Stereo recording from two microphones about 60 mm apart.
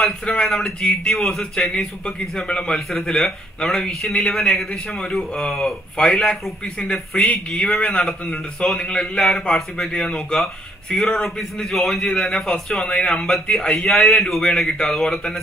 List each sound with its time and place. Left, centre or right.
0.4 s a man's voice: centre
3.2 s a man's voice: centre
6.8 s a man's voice: centre
10.4 s a man's voice: centre